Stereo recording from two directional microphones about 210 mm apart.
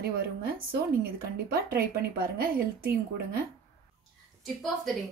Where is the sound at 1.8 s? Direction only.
45° right (ahead or behind).